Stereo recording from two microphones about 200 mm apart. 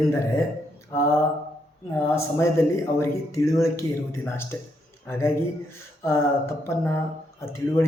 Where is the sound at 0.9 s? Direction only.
15° left (ahead or behind).